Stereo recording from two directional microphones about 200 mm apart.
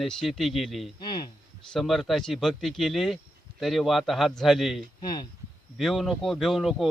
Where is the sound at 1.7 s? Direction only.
Centre (ahead or behind).